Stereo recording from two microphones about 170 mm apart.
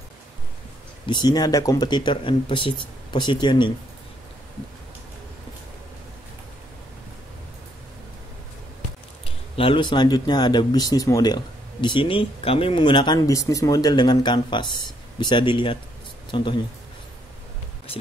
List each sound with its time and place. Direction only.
1.0 s speech: 25° left (ahead or behind)
9.2 s speech: 30° left (ahead or behind)